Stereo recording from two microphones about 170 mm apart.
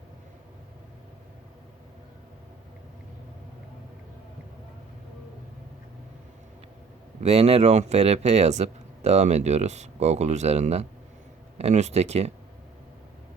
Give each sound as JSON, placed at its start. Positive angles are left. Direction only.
{"t": 7.2, "sound": "speech", "side_deg": -35}